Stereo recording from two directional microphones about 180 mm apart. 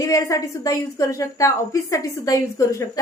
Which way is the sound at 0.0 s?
20° left (ahead or behind).